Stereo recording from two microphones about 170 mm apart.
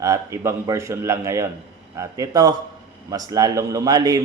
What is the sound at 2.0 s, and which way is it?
A man's voice, 20° right (ahead or behind).